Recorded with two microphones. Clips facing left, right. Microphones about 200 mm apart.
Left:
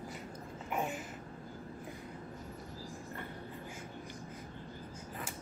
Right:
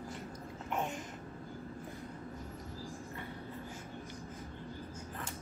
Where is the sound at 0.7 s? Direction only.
5° left (ahead or behind).